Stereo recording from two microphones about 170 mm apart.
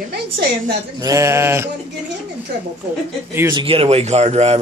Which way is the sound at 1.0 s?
20° right (ahead or behind).